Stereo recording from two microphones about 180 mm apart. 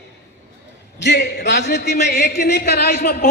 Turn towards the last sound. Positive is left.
turn(degrees=55)  # may be behind; listen again after turning